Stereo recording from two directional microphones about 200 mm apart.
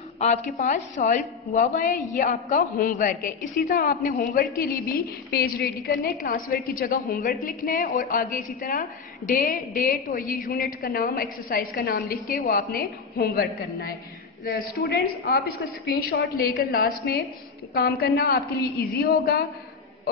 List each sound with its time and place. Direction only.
0.2 s a woman's voice: 35° left (ahead or behind)